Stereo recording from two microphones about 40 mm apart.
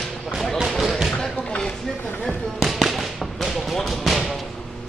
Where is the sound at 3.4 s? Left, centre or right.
Centre.